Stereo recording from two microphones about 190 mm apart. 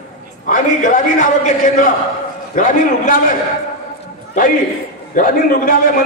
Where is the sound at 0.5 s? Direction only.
40° left (ahead or behind).